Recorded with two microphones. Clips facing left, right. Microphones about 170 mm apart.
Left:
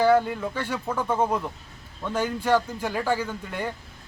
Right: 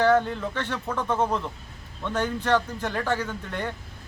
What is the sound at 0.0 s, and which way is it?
Speech, 10° left (ahead or behind).